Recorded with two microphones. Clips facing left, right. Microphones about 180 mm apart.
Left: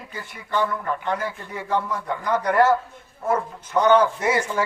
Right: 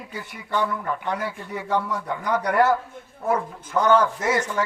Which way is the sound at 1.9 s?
10° right (ahead or behind).